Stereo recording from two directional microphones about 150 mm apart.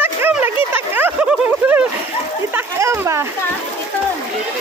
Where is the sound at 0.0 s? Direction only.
15° right (ahead or behind).